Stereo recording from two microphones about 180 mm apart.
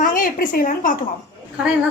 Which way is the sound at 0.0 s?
50° left (ahead or behind).